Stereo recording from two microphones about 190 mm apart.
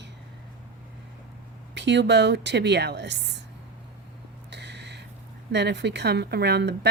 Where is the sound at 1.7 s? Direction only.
65° right (ahead or behind).